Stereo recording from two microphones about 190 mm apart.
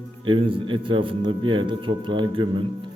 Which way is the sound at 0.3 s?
25° right (ahead or behind).